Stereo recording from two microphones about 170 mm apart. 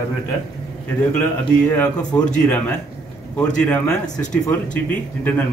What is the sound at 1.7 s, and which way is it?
Speech, 20° left (ahead or behind).